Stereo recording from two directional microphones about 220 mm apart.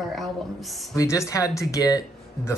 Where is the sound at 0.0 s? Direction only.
Centre (ahead or behind).